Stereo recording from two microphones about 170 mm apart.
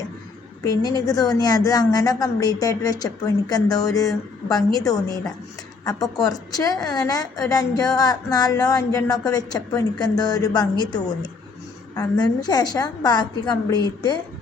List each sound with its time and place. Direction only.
0.6 s a woman's voice: 20° left (ahead or behind)